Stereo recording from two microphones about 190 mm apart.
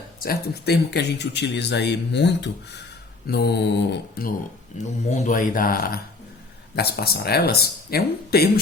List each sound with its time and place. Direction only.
0.2 s speech: 55° left (ahead or behind)
5.0 s speech: 40° left (ahead or behind)